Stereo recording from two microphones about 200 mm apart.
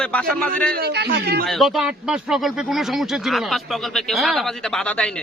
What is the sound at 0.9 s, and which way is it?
Speech, 50° right (ahead or behind).